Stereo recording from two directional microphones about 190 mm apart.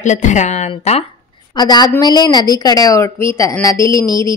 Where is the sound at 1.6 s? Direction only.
20° left (ahead or behind).